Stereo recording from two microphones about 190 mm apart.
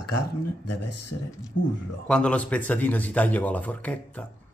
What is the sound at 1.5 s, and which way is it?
Speech, 70° left (ahead or behind).